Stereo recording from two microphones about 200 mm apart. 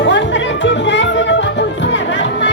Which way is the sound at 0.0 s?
65° left (ahead or behind).